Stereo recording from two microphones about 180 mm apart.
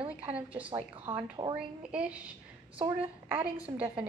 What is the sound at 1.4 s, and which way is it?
Speech, 20° right (ahead or behind).